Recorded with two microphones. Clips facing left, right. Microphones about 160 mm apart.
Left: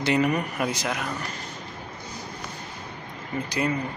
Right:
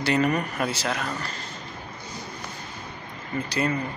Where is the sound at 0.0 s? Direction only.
15° left (ahead or behind).